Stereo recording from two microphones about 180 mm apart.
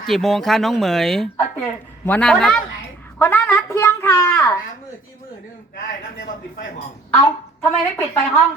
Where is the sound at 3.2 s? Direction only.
10° left (ahead or behind).